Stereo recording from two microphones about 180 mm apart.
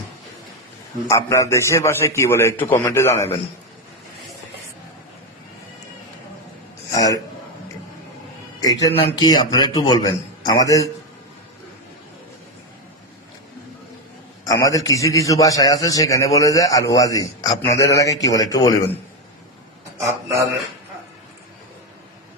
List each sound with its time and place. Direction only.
1.0 s a man's voice: 15° left (ahead or behind)
6.9 s a man's voice: 20° left (ahead or behind)
8.6 s a man's voice: 20° left (ahead or behind)
14.4 s a man's voice: 20° left (ahead or behind)
20.1 s speech: 15° right (ahead or behind)